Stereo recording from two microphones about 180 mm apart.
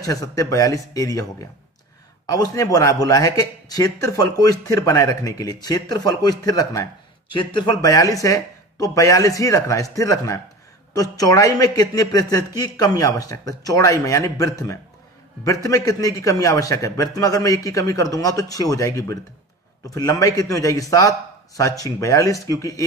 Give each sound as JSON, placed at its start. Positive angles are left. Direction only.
{"t": 0.0, "sound": "speech", "side_deg": 20}
{"t": 2.2, "sound": "speech", "side_deg": 20}